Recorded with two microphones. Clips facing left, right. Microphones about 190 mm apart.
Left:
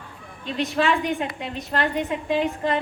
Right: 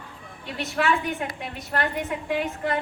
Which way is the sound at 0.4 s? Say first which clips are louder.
Left 3 dB; 20° left (ahead or behind).